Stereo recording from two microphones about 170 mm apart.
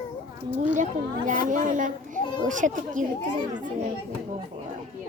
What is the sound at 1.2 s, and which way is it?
A woman's voice, 50° right (ahead or behind).